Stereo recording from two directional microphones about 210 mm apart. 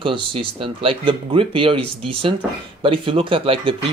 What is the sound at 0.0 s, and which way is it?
Speech, 25° right (ahead or behind).